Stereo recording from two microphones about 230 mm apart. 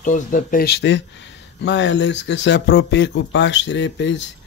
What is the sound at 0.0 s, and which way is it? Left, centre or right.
Speech, left.